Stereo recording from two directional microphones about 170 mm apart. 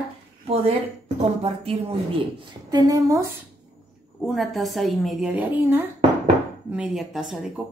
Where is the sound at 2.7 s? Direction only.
20° right (ahead or behind).